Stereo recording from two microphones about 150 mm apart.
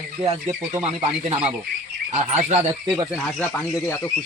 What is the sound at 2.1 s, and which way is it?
Speech, 45° right (ahead or behind).